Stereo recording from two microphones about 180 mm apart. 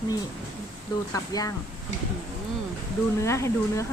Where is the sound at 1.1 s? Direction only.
20° left (ahead or behind).